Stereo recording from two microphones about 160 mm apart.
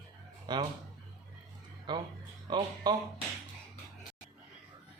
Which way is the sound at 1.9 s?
25° right (ahead or behind).